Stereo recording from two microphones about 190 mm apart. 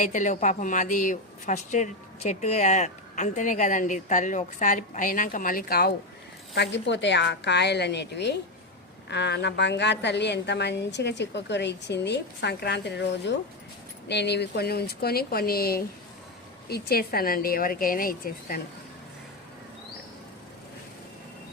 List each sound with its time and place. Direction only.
0.0 s a woman's voice: 40° left (ahead or behind)
6.5 s a woman's voice: 65° left (ahead or behind); by 18.6 s 50° left (ahead or behind)